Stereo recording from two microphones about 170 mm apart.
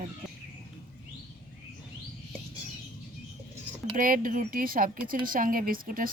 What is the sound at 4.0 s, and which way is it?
A woman's voice, 55° right (ahead or behind).